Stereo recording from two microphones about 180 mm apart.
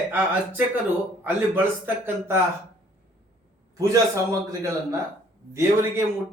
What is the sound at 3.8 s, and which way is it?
Speech, 20° right (ahead or behind).